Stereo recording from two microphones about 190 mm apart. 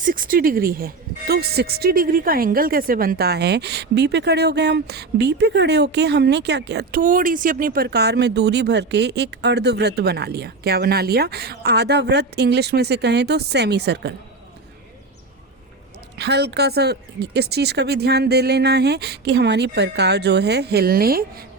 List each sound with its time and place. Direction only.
0.0 s speech: 45° right (ahead or behind)
16.1 s speech: 60° right (ahead or behind)